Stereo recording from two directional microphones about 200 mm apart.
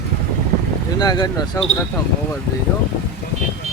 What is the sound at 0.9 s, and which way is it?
Speech, 20° left (ahead or behind).